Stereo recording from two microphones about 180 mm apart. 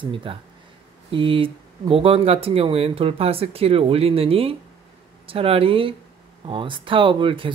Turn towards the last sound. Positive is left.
turn(degrees=-30)  # may be behind; listen again after turning